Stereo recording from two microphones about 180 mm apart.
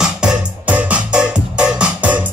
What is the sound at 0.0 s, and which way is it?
Music, 5° right (ahead or behind).